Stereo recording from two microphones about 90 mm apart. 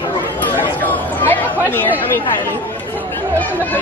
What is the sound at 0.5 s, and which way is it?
Chatter, 20° left (ahead or behind).